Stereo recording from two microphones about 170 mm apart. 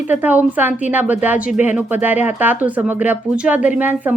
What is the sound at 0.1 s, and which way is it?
Speech, 10° right (ahead or behind).